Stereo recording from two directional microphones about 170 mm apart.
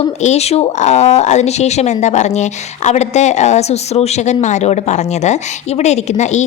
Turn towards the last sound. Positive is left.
turn(degrees=40)  # may be behind; listen again after turning